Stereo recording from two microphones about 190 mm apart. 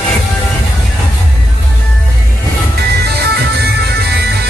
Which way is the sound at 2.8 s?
60° right (ahead or behind).